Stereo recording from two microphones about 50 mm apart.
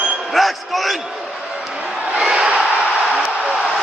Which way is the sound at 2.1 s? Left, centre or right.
Centre.